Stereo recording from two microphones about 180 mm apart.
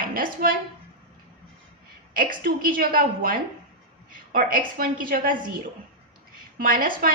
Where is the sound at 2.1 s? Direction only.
50° right (ahead or behind).